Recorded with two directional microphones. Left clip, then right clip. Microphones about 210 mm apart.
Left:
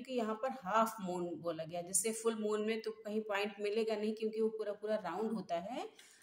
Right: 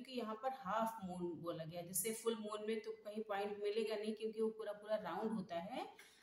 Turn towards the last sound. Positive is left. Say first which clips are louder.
# left 6 dB
turn(degrees=30)  # may be behind; listen again after turning